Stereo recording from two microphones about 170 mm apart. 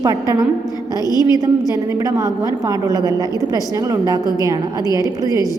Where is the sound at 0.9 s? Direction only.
20° left (ahead or behind).